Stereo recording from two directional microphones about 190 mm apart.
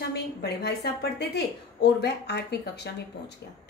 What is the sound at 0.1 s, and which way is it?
A woman's voice, 60° left (ahead or behind).